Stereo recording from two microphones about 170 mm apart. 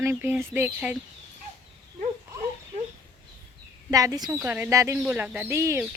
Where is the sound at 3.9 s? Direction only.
20° right (ahead or behind).